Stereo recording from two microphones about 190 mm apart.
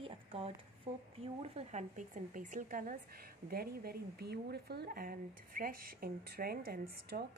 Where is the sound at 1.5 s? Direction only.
40° right (ahead or behind).